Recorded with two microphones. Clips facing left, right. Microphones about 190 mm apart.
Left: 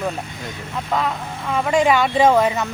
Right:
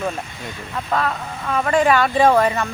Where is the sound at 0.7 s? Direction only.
15° left (ahead or behind).